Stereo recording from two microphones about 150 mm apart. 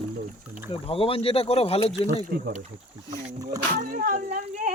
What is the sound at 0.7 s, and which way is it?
Speech, 40° left (ahead or behind).